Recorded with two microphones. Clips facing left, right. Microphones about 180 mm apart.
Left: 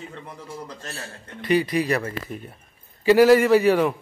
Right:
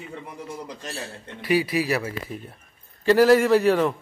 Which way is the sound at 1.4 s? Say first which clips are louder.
Left 1 dB; 5° right (ahead or behind).